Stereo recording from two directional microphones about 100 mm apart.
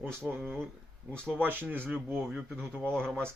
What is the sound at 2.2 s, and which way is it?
Speech, 5° right (ahead or behind).